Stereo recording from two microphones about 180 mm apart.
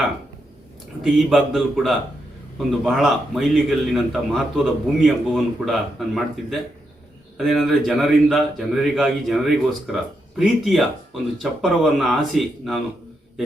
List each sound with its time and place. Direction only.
1.0 s a man's voice: centre (ahead or behind)